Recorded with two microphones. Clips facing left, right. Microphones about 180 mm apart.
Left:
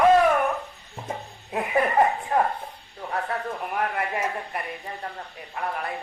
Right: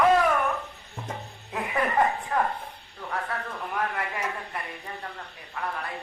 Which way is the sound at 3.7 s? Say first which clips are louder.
Left 3 dB; 30° left (ahead or behind).